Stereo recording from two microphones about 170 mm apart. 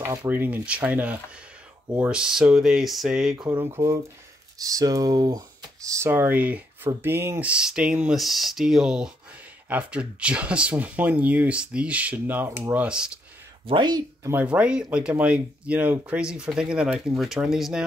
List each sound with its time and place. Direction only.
0.0 s speech: 10° right (ahead or behind)
3.3 s speech: 20° right (ahead or behind)
13.7 s speech: 25° right (ahead or behind)
14.3 s speech: 10° right (ahead or behind)